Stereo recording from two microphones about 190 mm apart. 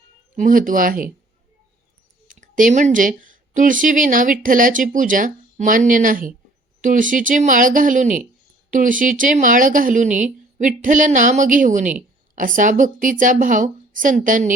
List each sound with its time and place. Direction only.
0.3 s a woman's voice: 45° right (ahead or behind)
2.2 s a woman's voice: 45° right (ahead or behind)